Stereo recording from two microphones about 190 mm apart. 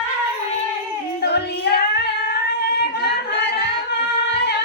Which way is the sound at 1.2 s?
65° left (ahead or behind).